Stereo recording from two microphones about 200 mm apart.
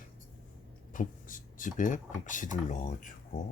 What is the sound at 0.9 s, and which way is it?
Speech, 40° left (ahead or behind).